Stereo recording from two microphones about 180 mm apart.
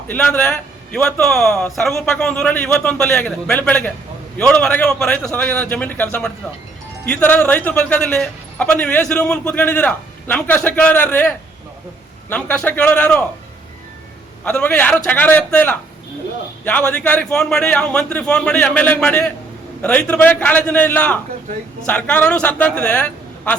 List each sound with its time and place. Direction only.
0.1 s a man's voice: 10° left (ahead or behind)
14.4 s a man's voice: 5° left (ahead or behind)